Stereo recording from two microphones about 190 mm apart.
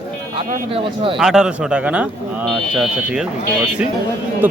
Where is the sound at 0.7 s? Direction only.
30° right (ahead or behind).